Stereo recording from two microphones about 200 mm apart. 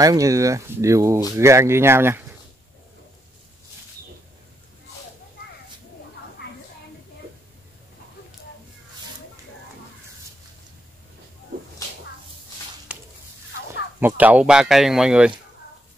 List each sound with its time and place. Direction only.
0.0 s speech: 15° right (ahead or behind)
13.9 s speech: 10° right (ahead or behind)